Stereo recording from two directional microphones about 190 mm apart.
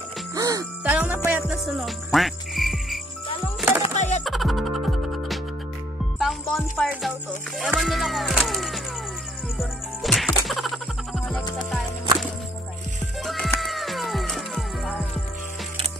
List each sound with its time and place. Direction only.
0.3 s music: 20° right (ahead or behind)
0.8 s frog: 10° right (ahead or behind)
3.8 s music: 35° left (ahead or behind)
4.2 s music: centre (ahead or behind)
13.2 s cat: centre (ahead or behind)